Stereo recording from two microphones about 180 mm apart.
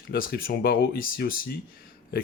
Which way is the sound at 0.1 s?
55° left (ahead or behind).